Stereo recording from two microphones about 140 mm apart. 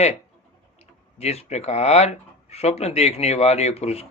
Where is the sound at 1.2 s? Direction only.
50° left (ahead or behind).